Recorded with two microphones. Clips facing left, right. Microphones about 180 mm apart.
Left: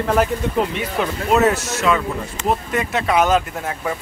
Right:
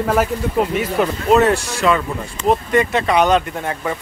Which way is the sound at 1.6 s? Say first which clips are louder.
Right 2 dB; 35° right (ahead or behind).